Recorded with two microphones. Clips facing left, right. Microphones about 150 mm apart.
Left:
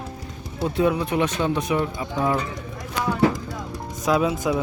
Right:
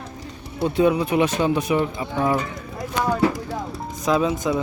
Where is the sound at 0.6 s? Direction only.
Centre (ahead or behind).